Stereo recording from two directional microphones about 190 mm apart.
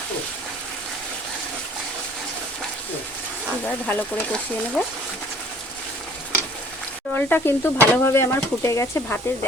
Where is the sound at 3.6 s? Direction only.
10° left (ahead or behind).